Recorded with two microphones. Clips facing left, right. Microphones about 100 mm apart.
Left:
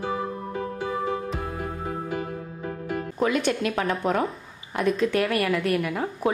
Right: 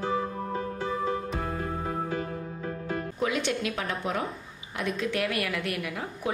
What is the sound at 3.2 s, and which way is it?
A woman's voice, 45° left (ahead or behind).